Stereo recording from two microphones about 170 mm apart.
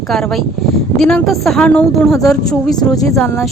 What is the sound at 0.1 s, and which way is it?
Speech, centre (ahead or behind).